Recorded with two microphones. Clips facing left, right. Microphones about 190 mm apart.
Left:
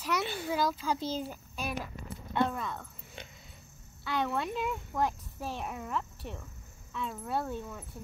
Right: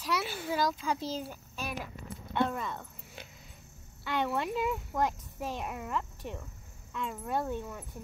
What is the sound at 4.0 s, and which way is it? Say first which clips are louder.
Speech: right 1 dB; 5° right (ahead or behind).